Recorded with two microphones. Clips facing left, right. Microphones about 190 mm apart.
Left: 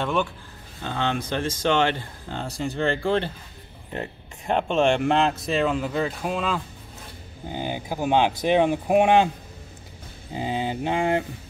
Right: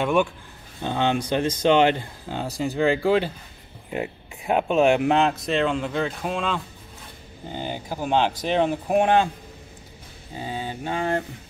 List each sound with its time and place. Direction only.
0.0 s speech: 10° right (ahead or behind); by 9.3 s 15° left (ahead or behind)
10.3 s speech: 20° left (ahead or behind)